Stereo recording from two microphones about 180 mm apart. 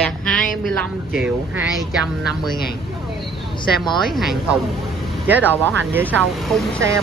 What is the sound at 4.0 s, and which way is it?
Speech, centre (ahead or behind).